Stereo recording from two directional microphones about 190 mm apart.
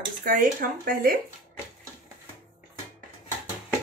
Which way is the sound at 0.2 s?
45° right (ahead or behind).